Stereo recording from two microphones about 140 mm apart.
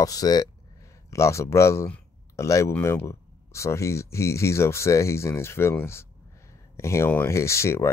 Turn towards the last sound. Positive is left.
turn(degrees=20)  # may be behind; listen again after turning